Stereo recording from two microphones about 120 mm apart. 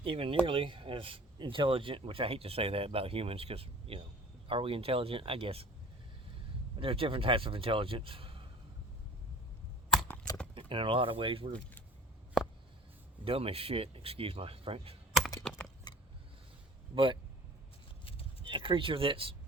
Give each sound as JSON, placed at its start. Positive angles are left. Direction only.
{"t": 0.0, "sound": "speech", "side_deg": -50}
{"t": 6.7, "sound": "speech", "side_deg": -50}
{"t": 10.5, "sound": "speech", "side_deg": -45}
{"t": 13.2, "sound": "speech", "side_deg": -50}
{"t": 15.4, "sound": "computer keyboard", "side_deg": 10}
{"t": 16.9, "sound": "speech", "side_deg": -45}
{"t": 18.0, "sound": "horse", "side_deg": 50}
{"t": 18.4, "sound": "speech", "side_deg": -45}